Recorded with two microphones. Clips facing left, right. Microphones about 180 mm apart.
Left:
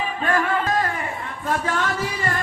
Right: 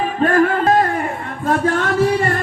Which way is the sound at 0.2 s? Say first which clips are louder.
Right 8 dB; 45° right (ahead or behind).